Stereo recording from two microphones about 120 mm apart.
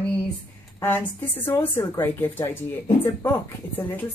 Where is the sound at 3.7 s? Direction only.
15° left (ahead or behind).